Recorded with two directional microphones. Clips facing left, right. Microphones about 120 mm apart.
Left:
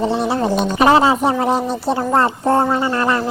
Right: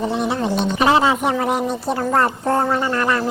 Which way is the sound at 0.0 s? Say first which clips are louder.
Left 3 dB; 30° left (ahead or behind).